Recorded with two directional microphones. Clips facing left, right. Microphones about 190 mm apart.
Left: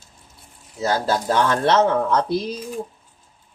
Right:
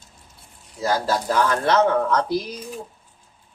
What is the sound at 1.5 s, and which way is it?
Speech, 25° left (ahead or behind).